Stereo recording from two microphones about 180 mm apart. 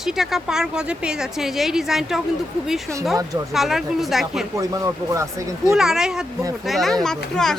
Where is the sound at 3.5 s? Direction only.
Centre (ahead or behind).